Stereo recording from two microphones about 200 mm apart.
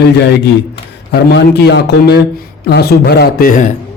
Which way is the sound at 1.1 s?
55° left (ahead or behind).